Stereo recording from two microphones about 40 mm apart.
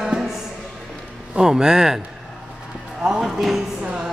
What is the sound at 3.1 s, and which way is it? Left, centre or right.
Speech, centre.